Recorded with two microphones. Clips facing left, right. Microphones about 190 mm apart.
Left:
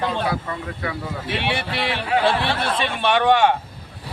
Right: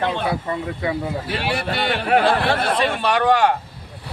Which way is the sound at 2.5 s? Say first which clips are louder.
Right 3 dB; 55° right (ahead or behind).